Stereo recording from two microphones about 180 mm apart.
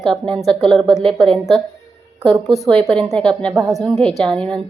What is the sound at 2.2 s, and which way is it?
Speech, 30° right (ahead or behind).